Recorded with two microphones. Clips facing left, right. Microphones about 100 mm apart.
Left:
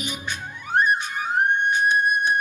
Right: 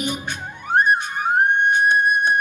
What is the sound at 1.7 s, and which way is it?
Music, 55° right (ahead or behind).